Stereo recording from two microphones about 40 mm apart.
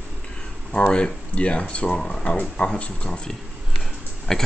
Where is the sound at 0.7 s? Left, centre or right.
Left.